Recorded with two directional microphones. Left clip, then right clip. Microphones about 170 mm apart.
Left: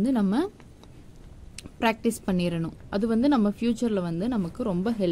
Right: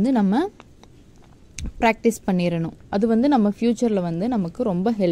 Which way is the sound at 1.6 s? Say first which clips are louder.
Right 6 dB; 10° right (ahead or behind).